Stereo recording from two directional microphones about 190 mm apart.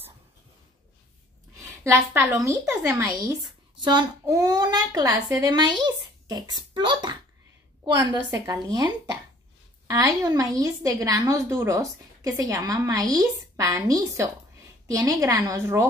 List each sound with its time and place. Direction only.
1.6 s a woman's voice: 15° right (ahead or behind)